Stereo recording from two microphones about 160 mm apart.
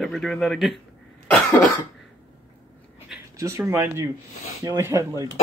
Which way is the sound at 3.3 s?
20° right (ahead or behind).